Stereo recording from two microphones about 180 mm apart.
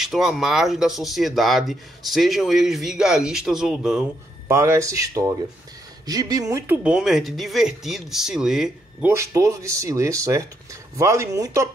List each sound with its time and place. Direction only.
0.0 s speech: centre (ahead or behind)
4.5 s speech: 15° right (ahead or behind)
6.8 s speech: 5° right (ahead or behind)
9.1 s speech: 15° right (ahead or behind)